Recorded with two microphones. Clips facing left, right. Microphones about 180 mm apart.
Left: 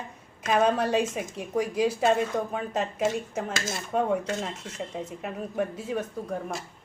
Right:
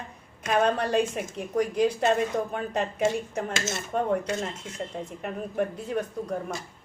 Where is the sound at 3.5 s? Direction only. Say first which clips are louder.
Right 1 dB; 25° right (ahead or behind).